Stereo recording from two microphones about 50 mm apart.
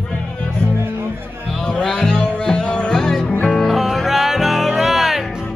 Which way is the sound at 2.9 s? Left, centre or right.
Centre.